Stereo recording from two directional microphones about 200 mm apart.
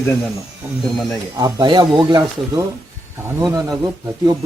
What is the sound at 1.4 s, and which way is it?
Speech, 15° right (ahead or behind).